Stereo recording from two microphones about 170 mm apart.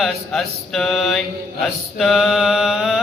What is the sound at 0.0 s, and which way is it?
Mantra, centre (ahead or behind).